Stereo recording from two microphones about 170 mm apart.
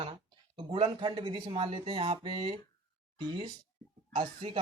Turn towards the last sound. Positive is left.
turn(degrees=-35)  # may be behind; listen again after turning